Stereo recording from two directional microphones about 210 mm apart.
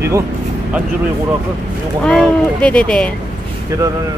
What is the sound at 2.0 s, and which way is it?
Speech, 5° left (ahead or behind).